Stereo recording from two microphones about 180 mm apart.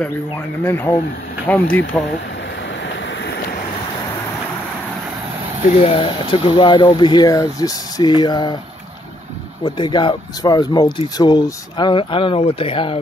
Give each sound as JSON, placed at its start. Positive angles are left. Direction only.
{"t": 0.7, "sound": "speech", "side_deg": 10}
{"t": 5.9, "sound": "speech", "side_deg": 30}
{"t": 9.8, "sound": "speech", "side_deg": 25}